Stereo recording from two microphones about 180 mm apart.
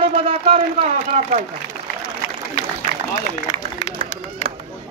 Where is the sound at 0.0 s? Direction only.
30° right (ahead or behind).